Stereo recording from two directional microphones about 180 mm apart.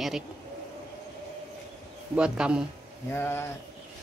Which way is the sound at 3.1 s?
15° left (ahead or behind).